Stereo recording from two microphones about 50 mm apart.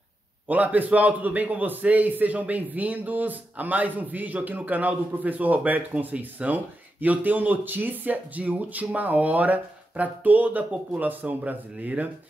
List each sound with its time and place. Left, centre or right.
0.5 s a man's voice: right